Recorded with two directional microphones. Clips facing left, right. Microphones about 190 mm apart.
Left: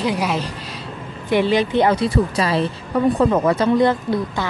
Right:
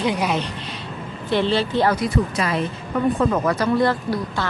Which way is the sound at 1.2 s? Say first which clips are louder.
Left 3 dB; 15° left (ahead or behind).